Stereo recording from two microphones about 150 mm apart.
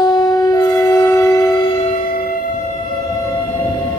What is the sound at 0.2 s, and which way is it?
Shofar, 25° left (ahead or behind).